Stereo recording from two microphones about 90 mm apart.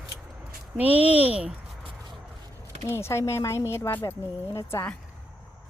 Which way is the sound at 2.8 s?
30° left (ahead or behind).